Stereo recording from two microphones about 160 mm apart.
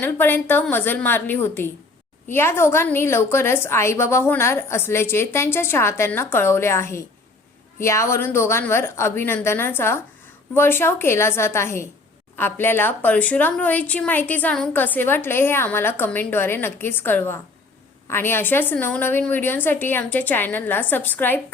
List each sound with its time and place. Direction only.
0.0 s a woman's voice: 10° left (ahead or behind)